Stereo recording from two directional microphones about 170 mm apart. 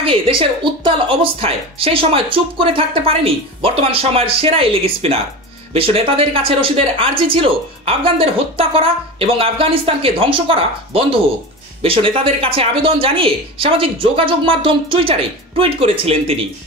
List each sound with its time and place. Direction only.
0.0 s speech: 30° right (ahead or behind)